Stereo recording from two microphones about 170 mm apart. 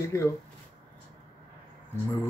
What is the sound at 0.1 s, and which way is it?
Speech, 15° left (ahead or behind).